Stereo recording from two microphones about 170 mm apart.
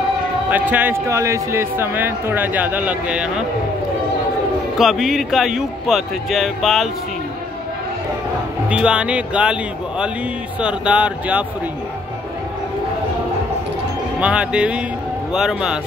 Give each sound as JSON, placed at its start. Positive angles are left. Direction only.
{"t": 0.5, "sound": "a man's voice", "side_deg": -10}
{"t": 4.7, "sound": "speech", "side_deg": 0}
{"t": 8.6, "sound": "a man's voice", "side_deg": -5}
{"t": 14.2, "sound": "a man's voice", "side_deg": -5}